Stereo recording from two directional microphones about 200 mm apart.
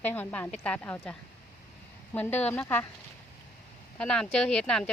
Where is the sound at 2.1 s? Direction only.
10° left (ahead or behind).